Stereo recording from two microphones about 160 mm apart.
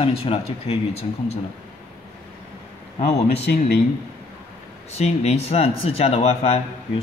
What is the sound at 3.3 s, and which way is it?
Speech, 90° left.